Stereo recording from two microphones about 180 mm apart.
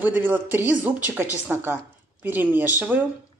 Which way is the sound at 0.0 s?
10° right (ahead or behind).